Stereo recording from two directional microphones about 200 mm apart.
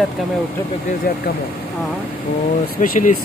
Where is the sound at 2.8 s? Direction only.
40° left (ahead or behind).